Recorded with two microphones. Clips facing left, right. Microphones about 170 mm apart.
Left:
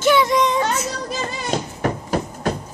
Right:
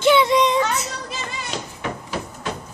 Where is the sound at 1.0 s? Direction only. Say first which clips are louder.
Left 6 dB; 40° left (ahead or behind).